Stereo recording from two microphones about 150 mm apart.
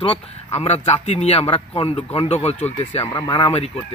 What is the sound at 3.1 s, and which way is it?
Speech, 30° left (ahead or behind).